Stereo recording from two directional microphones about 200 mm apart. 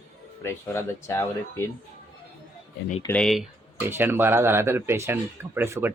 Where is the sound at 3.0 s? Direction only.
5° left (ahead or behind).